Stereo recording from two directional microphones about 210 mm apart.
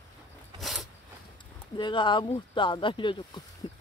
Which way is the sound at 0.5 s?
Centre (ahead or behind).